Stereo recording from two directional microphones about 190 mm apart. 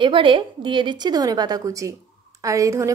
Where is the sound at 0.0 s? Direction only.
25° right (ahead or behind).